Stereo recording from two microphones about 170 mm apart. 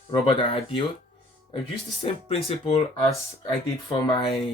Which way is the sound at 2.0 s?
35° left (ahead or behind).